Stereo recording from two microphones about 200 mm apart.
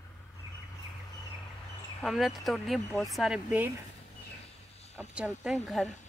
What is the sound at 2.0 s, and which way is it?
Speech, centre (ahead or behind).